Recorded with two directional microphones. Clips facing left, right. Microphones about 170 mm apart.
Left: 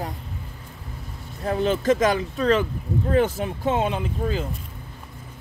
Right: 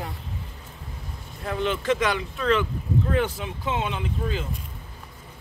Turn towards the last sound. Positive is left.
turn(degrees=40)  # may be behind; listen again after turning